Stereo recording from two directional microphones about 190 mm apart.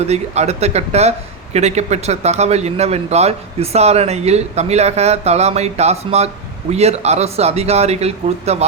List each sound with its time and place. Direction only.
0.0 s speech: 35° right (ahead or behind)